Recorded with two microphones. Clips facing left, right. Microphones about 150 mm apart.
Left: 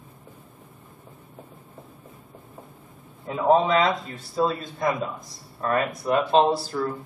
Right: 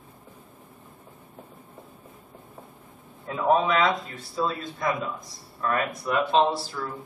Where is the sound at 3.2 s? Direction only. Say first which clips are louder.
Left 3 dB; 30° left (ahead or behind).